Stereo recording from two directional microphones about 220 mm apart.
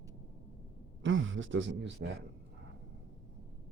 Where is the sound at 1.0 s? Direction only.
60° right (ahead or behind).